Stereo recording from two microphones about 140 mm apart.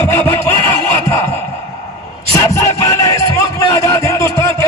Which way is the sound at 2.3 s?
25° left (ahead or behind).